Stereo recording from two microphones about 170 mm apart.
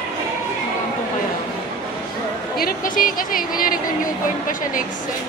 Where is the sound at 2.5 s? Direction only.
55° left (ahead or behind).